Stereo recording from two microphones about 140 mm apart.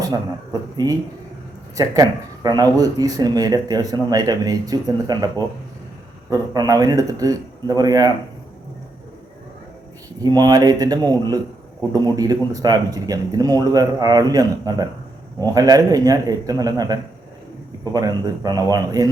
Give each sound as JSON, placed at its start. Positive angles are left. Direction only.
{"t": 0.8, "sound": "speech", "side_deg": -25}
{"t": 6.3, "sound": "speech", "side_deg": -25}
{"t": 10.2, "sound": "speech", "side_deg": -30}